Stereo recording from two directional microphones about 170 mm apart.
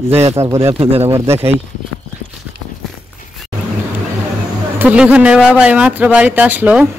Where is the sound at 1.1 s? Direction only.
15° right (ahead or behind).